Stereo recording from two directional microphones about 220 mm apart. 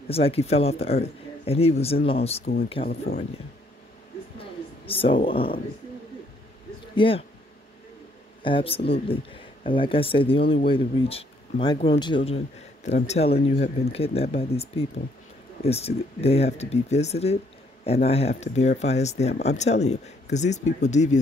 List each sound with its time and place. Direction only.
0.1 s speech: 25° left (ahead or behind)
2.9 s speech: 40° left (ahead or behind)
4.4 s a sound: 25° left (ahead or behind)
7.0 s speech: 25° left (ahead or behind)
8.4 s speech: 25° left (ahead or behind)